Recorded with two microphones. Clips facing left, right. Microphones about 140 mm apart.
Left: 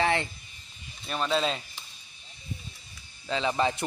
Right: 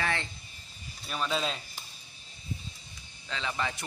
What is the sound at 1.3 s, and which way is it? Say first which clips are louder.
Speech: left 6 dB; centre (ahead or behind).